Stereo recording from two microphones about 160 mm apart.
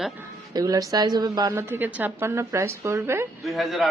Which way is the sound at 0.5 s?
20° right (ahead or behind).